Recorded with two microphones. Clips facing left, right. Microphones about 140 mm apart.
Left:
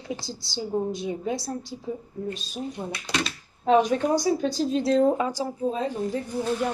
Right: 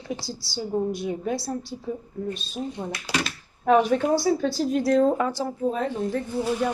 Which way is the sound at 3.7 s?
15° left (ahead or behind).